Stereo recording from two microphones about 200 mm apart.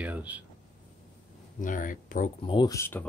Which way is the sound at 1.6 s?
40° left (ahead or behind).